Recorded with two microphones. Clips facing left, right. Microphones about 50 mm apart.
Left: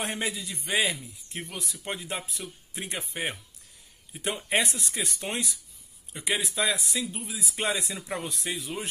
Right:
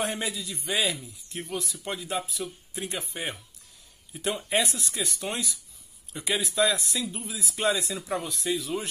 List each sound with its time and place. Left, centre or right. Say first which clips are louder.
0.0 s a man's voice: right 1 dB; left
7.9 s speech: right 3 dB; centre
8.5 s speech: right 7 dB; left